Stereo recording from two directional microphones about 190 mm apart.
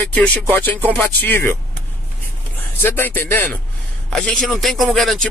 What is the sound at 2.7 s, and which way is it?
Speech, 10° left (ahead or behind).